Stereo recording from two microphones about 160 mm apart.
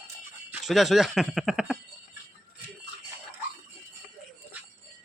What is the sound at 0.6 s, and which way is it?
Speech, centre (ahead or behind).